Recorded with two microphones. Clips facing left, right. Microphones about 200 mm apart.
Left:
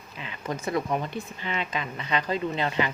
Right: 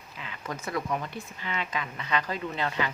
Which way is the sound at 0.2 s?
20° left (ahead or behind).